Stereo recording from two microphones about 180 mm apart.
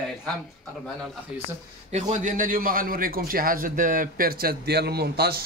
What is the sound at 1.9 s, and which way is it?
A man's voice, 45° right (ahead or behind).